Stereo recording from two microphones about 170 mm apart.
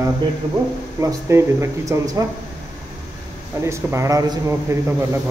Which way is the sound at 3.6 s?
15° right (ahead or behind).